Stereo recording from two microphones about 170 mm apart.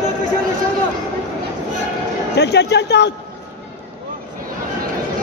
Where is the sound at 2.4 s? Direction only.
80° left.